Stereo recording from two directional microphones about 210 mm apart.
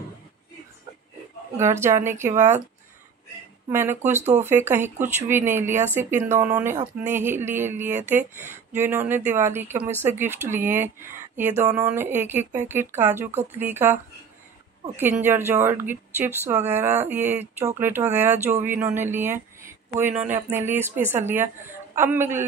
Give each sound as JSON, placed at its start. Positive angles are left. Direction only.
{"t": 1.6, "sound": "speech", "side_deg": -10}
{"t": 3.6, "sound": "speech", "side_deg": -10}
{"t": 4.0, "sound": "speech", "side_deg": -35}
{"t": 4.5, "sound": "speech", "side_deg": -10}
{"t": 15.2, "sound": "speech", "side_deg": -10}